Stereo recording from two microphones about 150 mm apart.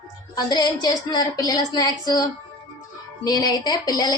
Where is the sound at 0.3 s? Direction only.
25° left (ahead or behind).